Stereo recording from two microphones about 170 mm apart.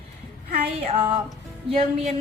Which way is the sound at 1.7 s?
35° right (ahead or behind).